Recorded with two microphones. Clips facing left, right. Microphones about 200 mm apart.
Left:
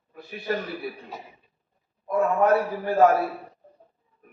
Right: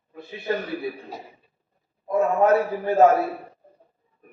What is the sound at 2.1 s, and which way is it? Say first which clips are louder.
A man's voice: right 2 dB; 25° right (ahead or behind).